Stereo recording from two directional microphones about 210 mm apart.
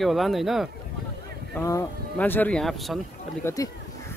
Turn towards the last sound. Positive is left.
turn(degrees=15)  # may be behind; listen again after turning